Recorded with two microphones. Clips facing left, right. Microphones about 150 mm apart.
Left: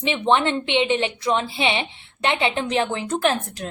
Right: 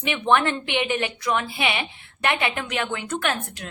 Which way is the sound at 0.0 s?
25° left (ahead or behind).